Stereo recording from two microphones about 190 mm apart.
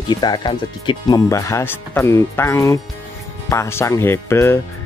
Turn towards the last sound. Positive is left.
turn(degrees=15)  # may be behind; listen again after turning